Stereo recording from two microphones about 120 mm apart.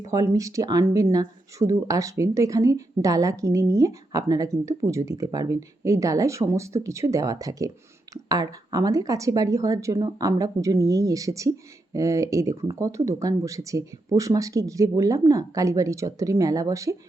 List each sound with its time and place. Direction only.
0.0 s speech: 30° right (ahead or behind)